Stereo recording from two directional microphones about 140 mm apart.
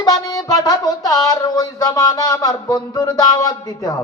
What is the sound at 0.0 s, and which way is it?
Music, 25° left (ahead or behind).